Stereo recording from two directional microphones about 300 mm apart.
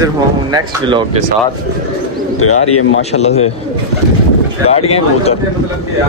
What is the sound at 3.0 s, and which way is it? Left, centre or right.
Speech, left.